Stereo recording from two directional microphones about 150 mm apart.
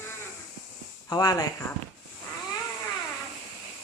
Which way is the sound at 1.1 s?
25° left (ahead or behind).